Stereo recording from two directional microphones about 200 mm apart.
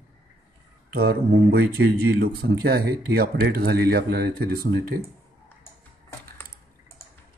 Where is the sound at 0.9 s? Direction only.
50° right (ahead or behind).